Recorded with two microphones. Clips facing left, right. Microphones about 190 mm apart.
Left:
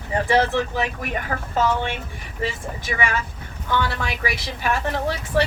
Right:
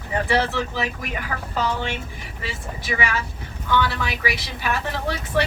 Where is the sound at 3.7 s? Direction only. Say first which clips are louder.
Right 1 dB; 45° left (ahead or behind).